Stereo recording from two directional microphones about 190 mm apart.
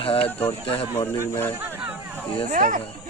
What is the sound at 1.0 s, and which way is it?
Speech, 15° left (ahead or behind).